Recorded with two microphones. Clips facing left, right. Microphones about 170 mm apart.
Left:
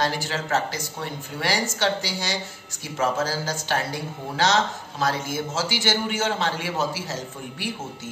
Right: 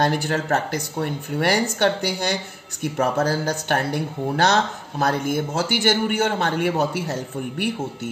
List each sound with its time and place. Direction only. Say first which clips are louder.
0.0 s speech: right 5 dB; 55° right (ahead or behind)